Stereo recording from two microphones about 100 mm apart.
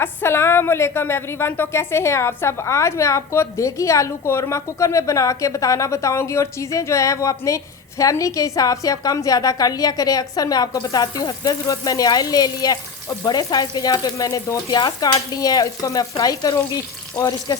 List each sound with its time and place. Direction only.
0.0 s a woman's voice: 25° left (ahead or behind); by 17.6 s 40° left (ahead or behind)